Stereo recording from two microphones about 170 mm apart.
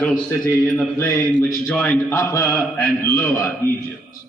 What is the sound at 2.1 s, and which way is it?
A man's voice, 15° left (ahead or behind).